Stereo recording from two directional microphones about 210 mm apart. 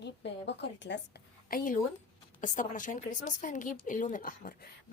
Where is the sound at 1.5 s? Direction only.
40° left (ahead or behind).